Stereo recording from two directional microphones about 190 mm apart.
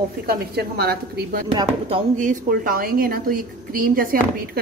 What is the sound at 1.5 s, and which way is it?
Speech, 25° right (ahead or behind).